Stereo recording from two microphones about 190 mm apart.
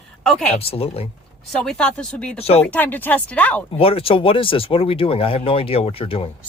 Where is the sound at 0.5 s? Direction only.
30° left (ahead or behind).